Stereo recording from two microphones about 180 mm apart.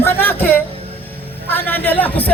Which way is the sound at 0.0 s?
10° left (ahead or behind).